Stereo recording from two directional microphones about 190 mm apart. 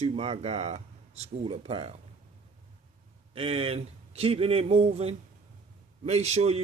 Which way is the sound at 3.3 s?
30° right (ahead or behind).